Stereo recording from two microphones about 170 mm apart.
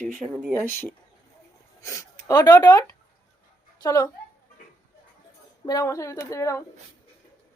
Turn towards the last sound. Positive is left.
turn(degrees=20)  # may be behind; listen again after turning